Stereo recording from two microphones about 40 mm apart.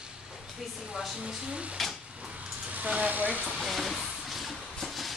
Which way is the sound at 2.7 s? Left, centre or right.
Right.